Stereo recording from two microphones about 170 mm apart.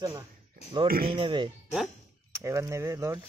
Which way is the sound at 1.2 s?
30° right (ahead or behind).